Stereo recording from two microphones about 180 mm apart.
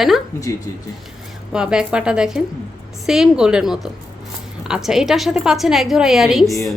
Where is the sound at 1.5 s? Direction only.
5° right (ahead or behind).